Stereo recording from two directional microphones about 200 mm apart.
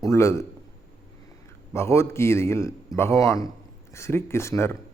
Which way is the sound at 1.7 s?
15° left (ahead or behind).